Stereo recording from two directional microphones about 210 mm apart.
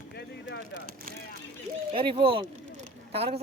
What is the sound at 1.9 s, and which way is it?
A woman's voice, 25° right (ahead or behind).